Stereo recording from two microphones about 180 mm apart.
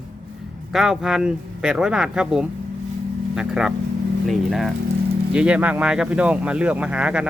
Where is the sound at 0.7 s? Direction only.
Centre (ahead or behind).